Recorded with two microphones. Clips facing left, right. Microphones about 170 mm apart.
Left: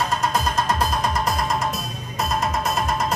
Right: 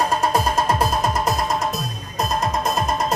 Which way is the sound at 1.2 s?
Centre (ahead or behind).